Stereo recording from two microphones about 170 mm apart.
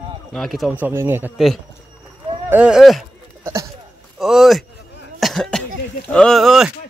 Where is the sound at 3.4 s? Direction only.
20° right (ahead or behind).